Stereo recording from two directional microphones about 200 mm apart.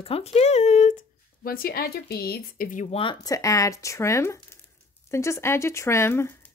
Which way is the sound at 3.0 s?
20° left (ahead or behind).